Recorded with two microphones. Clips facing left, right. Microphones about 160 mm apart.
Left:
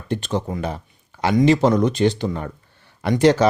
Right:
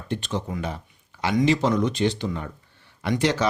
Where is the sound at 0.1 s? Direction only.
40° left (ahead or behind).